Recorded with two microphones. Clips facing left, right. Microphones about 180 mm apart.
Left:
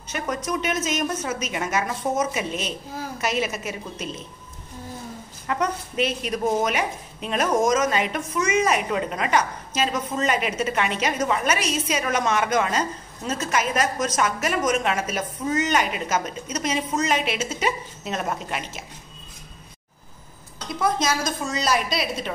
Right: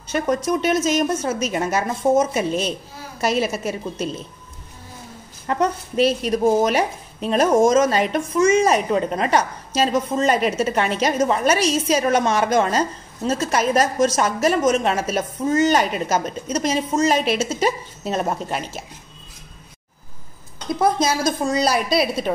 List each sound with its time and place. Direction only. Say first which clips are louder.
0.1 s a woman's voice: right 7 dB; 30° right (ahead or behind)
5.5 s a woman's voice: right 4 dB; 35° right (ahead or behind)
20.8 s a woman's voice: right 4 dB; 30° right (ahead or behind)